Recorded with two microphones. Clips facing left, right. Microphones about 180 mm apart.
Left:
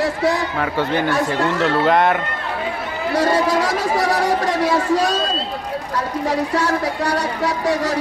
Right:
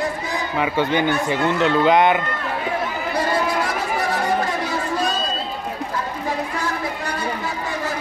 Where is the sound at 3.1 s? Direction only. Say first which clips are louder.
Left 5 dB; 90° left.